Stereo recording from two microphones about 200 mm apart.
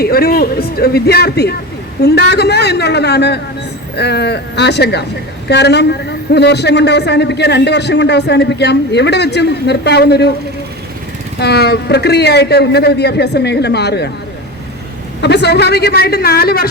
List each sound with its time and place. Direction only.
0.0 s a man's voice: 50° left (ahead or behind)
11.3 s a man's voice: 55° left (ahead or behind)
15.2 s a man's voice: 55° left (ahead or behind)